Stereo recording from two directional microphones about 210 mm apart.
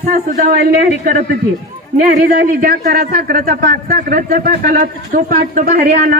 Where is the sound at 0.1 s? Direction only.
35° right (ahead or behind).